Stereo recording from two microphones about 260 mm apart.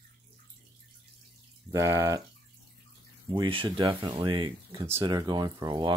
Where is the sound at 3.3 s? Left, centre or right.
Centre.